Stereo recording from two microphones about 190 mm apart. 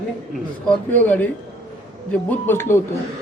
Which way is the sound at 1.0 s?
10° left (ahead or behind).